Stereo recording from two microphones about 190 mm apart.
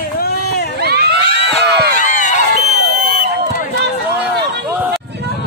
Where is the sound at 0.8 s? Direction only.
60° right (ahead or behind).